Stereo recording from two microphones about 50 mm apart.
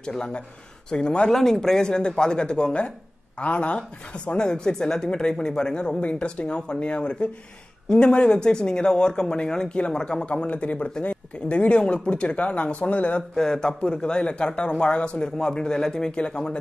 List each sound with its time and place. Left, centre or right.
0.0 s a man's voice: centre
13.4 s a man's voice: centre